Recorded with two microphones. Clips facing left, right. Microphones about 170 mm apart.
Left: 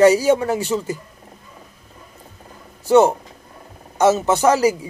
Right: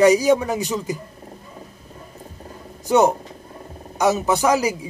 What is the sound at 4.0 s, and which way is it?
Speech, 15° right (ahead or behind).